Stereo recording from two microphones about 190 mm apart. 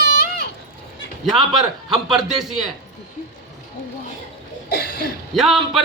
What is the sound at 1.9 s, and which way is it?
Speech, centre (ahead or behind).